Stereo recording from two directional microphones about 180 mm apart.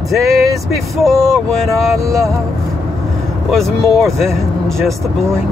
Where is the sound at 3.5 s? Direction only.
Centre (ahead or behind).